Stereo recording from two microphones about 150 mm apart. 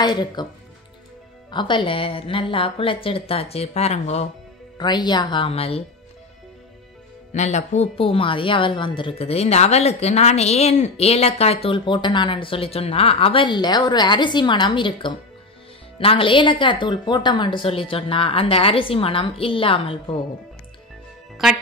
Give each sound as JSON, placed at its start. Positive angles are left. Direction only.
{"t": 0.0, "sound": "speech", "side_deg": 30}
{"t": 1.5, "sound": "a woman's voice", "side_deg": 30}
{"t": 4.7, "sound": "a woman's voice", "side_deg": 30}
{"t": 7.3, "sound": "a woman's voice", "side_deg": 50}